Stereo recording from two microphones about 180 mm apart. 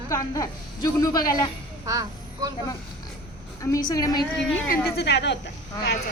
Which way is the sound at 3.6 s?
20° left (ahead or behind).